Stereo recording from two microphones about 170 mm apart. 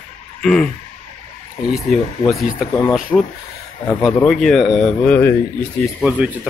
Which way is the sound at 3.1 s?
25° left (ahead or behind).